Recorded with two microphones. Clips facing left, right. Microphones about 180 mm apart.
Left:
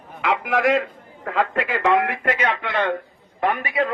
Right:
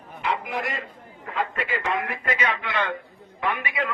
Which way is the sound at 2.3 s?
45° left (ahead or behind).